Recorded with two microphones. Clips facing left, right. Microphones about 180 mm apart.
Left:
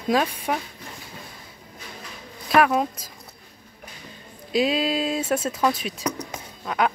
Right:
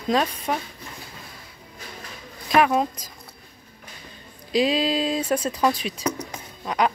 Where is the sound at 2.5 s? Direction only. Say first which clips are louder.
Even; centre (ahead or behind).